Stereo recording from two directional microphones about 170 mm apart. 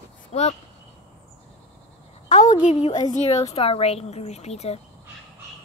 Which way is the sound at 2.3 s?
45° left (ahead or behind).